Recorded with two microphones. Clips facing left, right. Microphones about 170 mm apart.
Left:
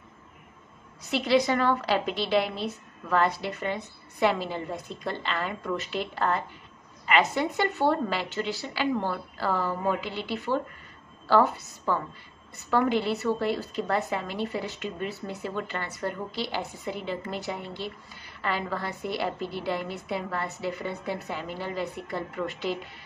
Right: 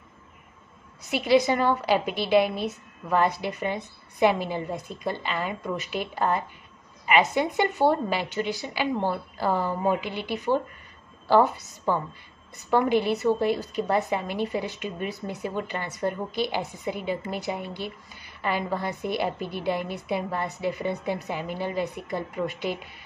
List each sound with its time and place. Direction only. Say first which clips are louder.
1.1 s a woman's voice: right 2 dB; 10° right (ahead or behind)